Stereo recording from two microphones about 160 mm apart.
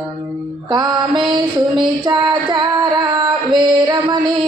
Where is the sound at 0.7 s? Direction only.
25° right (ahead or behind).